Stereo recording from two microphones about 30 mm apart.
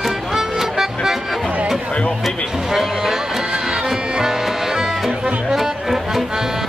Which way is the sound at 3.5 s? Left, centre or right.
Right.